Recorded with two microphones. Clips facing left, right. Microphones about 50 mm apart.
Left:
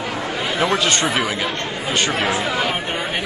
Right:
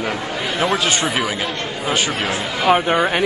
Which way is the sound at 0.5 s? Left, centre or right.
Centre.